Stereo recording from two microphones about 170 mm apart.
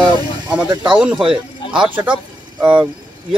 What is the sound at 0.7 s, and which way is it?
Speech, 30° right (ahead or behind).